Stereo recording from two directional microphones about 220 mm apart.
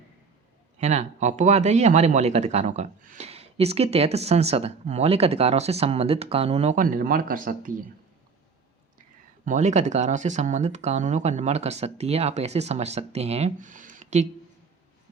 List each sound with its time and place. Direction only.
0.8 s speech: 30° right (ahead or behind)
9.4 s speech: 35° right (ahead or behind)